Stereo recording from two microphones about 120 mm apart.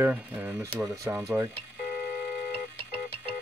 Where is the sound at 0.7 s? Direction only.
25° right (ahead or behind).